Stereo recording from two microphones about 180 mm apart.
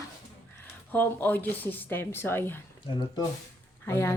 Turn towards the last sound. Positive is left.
turn(degrees=15)  # may be behind; listen again after turning